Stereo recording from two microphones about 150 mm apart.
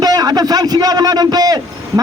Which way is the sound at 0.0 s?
25° right (ahead or behind).